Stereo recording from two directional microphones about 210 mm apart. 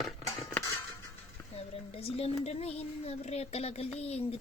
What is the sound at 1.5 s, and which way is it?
A child's voice, 30° left (ahead or behind).